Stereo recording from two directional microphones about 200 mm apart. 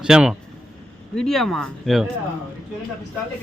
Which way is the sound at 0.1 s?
5° right (ahead or behind).